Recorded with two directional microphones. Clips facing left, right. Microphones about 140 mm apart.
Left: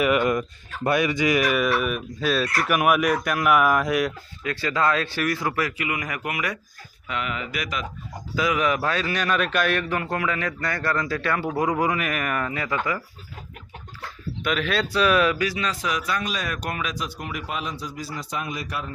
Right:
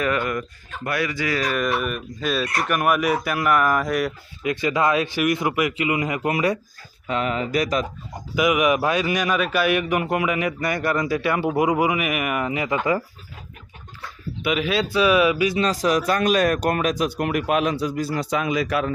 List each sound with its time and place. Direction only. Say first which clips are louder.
0.2 s speech: left 3 dB; 20° left (ahead or behind); by 4.1 s centre (ahead or behind)
4.4 s a man's voice: right 3 dB; 15° right (ahead or behind); by 7.9 s 40° right (ahead or behind)
8.4 s a man's voice: right 4 dB; 15° right (ahead or behind)
14.4 s a man's voice: right 3 dB; 5° right (ahead or behind)
15.5 s a man's voice: right 7 dB; 35° right (ahead or behind); by 18.9 s 90° right